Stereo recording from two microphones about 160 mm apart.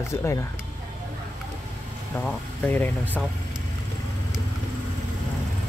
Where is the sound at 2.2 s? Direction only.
10° left (ahead or behind).